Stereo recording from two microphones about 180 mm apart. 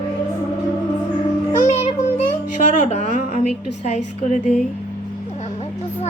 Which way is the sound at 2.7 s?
45° left (ahead or behind).